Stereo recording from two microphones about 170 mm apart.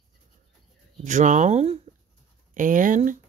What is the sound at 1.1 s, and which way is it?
Speech, 45° right (ahead or behind).